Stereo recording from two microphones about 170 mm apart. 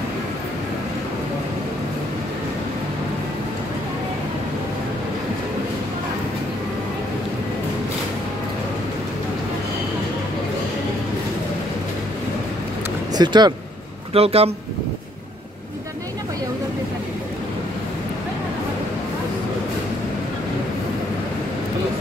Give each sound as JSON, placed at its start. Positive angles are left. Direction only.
{"t": 13.1, "sound": "speech", "side_deg": -25}
{"t": 14.1, "sound": "speech", "side_deg": -35}